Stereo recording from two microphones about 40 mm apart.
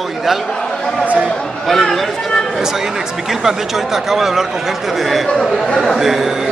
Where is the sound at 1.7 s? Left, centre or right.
Centre.